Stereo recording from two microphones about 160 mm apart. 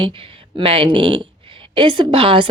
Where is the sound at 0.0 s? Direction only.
35° right (ahead or behind).